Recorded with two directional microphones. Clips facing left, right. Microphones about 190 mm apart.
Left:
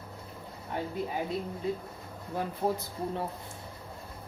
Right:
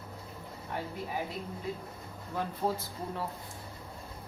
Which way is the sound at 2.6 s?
20° left (ahead or behind).